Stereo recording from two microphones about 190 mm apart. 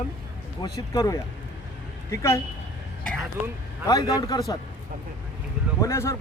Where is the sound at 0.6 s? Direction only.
20° left (ahead or behind).